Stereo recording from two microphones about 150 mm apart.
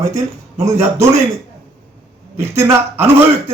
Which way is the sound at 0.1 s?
20° right (ahead or behind).